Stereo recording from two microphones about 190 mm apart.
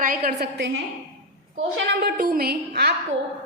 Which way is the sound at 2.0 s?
50° right (ahead or behind).